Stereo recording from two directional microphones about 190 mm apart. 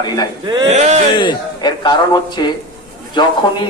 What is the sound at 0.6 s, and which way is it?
Speech, 35° right (ahead or behind).